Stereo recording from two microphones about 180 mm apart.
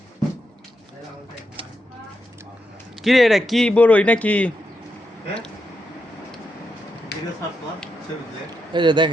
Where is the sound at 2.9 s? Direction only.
Centre (ahead or behind).